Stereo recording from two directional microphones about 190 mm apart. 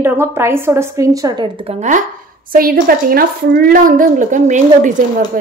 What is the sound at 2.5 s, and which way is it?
A woman's voice, 50° right (ahead or behind).